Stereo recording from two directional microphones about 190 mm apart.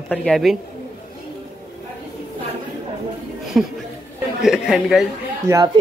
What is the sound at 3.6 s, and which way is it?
A woman's voice, 5° right (ahead or behind).